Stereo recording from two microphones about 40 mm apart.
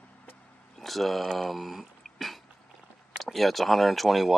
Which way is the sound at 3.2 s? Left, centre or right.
Centre.